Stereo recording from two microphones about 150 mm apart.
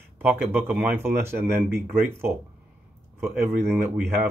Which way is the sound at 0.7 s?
15° right (ahead or behind).